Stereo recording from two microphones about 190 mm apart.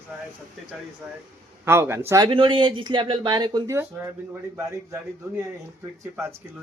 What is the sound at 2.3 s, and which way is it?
A man's voice, 25° right (ahead or behind).